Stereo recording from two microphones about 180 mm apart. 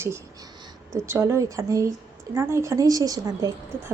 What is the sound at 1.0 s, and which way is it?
A woman's voice, 15° right (ahead or behind).